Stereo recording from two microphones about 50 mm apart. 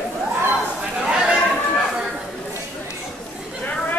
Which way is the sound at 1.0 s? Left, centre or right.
Centre.